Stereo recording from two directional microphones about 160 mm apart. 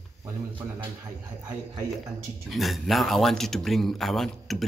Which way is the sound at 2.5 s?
Centre (ahead or behind).